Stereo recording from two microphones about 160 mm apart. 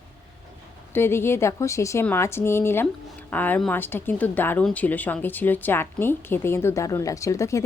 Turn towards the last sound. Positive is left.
turn(degrees=20)  # may be behind; listen again after turning